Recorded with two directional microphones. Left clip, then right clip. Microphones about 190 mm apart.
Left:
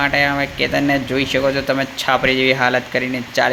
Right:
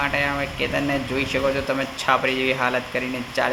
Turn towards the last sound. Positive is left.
turn(degrees=25)  # may be behind; listen again after turning